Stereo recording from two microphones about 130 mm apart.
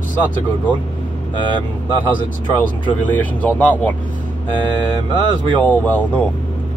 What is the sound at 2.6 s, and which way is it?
Speech, 10° left (ahead or behind).